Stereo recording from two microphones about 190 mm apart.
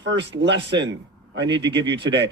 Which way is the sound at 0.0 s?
70° right (ahead or behind).